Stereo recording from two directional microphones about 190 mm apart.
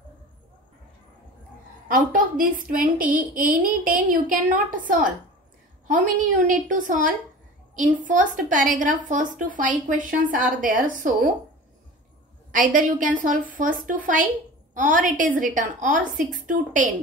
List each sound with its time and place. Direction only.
1.9 s a woman's voice: 45° right (ahead or behind)
5.9 s a woman's voice: 45° right (ahead or behind)
12.4 s a woman's voice: 45° right (ahead or behind)